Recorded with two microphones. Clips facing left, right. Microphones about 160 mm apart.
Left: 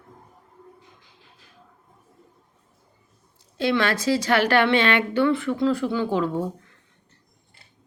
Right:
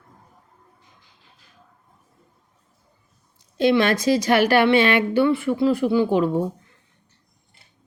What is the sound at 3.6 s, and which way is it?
A woman's voice, 15° right (ahead or behind).